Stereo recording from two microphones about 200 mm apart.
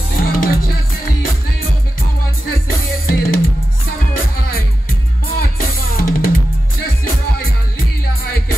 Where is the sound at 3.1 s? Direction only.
45° left (ahead or behind).